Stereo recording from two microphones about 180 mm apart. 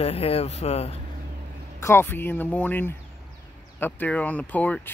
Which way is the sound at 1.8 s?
15° left (ahead or behind).